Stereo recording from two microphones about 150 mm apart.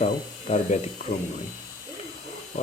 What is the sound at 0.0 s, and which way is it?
Speech, 50° left (ahead or behind).